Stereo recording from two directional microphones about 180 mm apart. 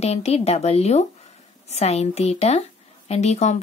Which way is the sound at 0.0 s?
35° left (ahead or behind).